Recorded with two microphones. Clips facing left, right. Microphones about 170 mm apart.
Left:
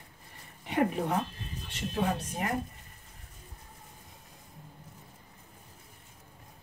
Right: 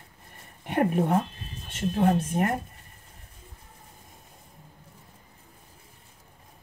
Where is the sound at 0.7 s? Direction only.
55° right (ahead or behind).